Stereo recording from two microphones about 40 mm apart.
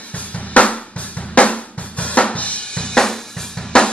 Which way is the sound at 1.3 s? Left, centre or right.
Left.